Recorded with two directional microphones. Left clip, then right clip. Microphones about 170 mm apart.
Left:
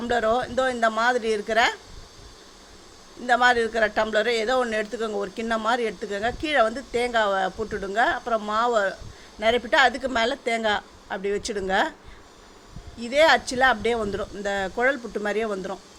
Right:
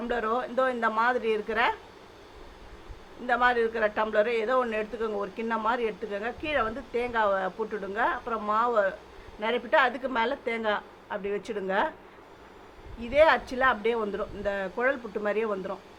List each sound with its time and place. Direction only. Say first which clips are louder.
0.0 s speech: left 6 dB; 30° left (ahead or behind)
3.2 s a woman's voice: left 5 dB; 30° left (ahead or behind)
13.0 s a woman's voice: left 3 dB; 30° left (ahead or behind)